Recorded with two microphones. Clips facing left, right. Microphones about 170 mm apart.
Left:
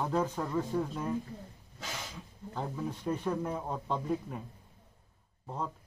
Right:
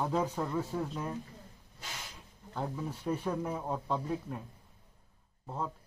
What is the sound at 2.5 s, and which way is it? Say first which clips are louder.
Speech: left 1 dB; centre (ahead or behind).